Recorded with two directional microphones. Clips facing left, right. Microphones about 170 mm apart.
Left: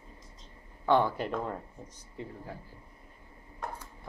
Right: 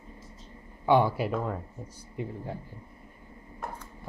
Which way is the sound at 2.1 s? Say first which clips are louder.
Right 6 dB; 20° right (ahead or behind).